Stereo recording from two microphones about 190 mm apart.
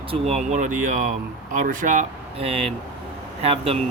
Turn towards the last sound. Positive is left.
turn(degrees=-30)  # may be behind; listen again after turning